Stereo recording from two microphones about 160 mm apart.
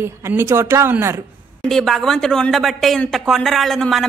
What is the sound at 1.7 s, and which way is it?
Speech, centre (ahead or behind).